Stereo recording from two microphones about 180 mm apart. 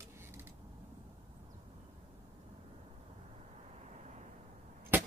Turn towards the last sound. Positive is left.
turn(degrees=-10)  # may be behind; listen again after turning